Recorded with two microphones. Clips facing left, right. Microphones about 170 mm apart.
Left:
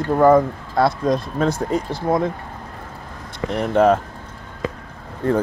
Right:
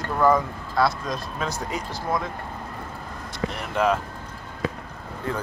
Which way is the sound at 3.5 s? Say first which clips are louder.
Left 8 dB; 50° left (ahead or behind).